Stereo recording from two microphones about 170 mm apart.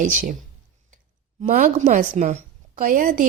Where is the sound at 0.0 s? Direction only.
50° right (ahead or behind).